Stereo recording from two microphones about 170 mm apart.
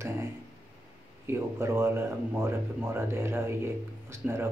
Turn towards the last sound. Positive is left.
turn(degrees=-15)  # may be behind; listen again after turning